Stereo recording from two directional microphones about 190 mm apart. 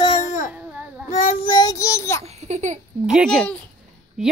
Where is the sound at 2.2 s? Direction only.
35° right (ahead or behind).